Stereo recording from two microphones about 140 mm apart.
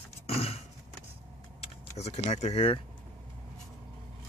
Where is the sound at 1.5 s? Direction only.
50° left (ahead or behind).